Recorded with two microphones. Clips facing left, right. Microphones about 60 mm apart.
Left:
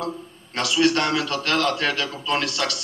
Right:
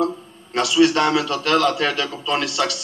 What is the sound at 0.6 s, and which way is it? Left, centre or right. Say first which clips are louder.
A man's voice: right 4 dB; left.